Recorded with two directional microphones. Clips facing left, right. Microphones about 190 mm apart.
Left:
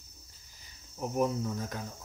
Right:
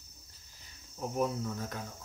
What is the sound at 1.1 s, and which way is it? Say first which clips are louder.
Speech: left 3 dB; 15° left (ahead or behind).